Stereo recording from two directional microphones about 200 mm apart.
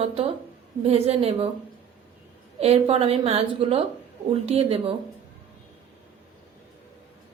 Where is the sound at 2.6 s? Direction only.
30° right (ahead or behind).